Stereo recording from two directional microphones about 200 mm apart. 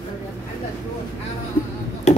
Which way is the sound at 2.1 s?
35° left (ahead or behind).